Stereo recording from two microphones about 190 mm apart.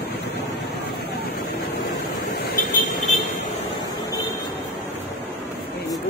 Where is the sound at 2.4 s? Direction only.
45° left (ahead or behind).